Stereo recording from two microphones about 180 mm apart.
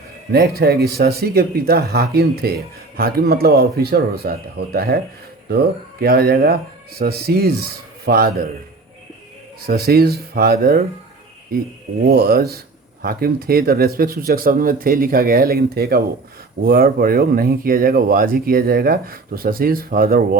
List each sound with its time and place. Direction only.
0.3 s speech: 60° right (ahead or behind)
9.6 s speech: 60° right (ahead or behind)
12.0 s speech: 55° right (ahead or behind)